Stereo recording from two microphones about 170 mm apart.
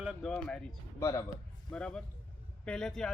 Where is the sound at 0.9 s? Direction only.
15° left (ahead or behind).